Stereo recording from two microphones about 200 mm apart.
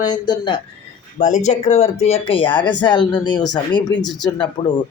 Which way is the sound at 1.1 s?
35° left (ahead or behind).